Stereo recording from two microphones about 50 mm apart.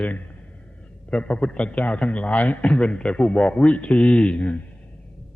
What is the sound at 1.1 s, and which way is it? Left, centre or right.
A man's voice, left.